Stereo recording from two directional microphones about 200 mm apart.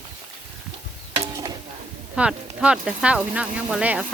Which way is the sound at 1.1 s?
20° right (ahead or behind).